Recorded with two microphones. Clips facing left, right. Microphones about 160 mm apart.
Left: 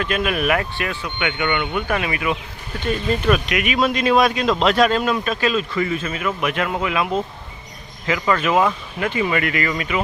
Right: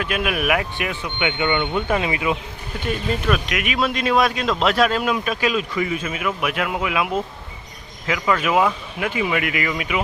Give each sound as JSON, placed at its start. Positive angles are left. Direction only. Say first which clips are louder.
{"t": 0.0, "sound": "speech", "louder": "left 2 dB", "side_deg": -10}
{"t": 3.2, "sound": "a man's voice", "louder": "left 4 dB", "side_deg": 0}